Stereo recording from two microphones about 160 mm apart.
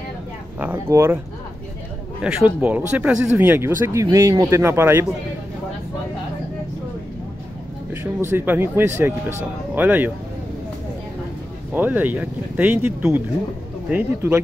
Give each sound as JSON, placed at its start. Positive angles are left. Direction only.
{"t": 0.6, "sound": "speech", "side_deg": -15}
{"t": 2.2, "sound": "speech", "side_deg": -10}
{"t": 7.9, "sound": "speech", "side_deg": -15}
{"t": 11.7, "sound": "speech", "side_deg": -10}